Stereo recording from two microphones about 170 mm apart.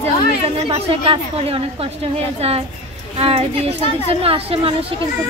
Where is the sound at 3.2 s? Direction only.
35° right (ahead or behind).